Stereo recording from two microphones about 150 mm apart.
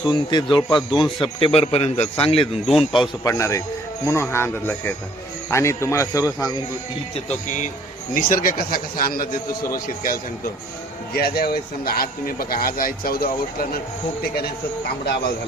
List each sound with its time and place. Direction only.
0.0 s a man's voice: 30° left (ahead or behind)
3.2 s speech: 20° left (ahead or behind)
8.1 s speech: 65° left (ahead or behind)
11.1 s speech: 90° left